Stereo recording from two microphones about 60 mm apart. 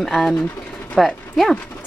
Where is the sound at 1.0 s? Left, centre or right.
Centre.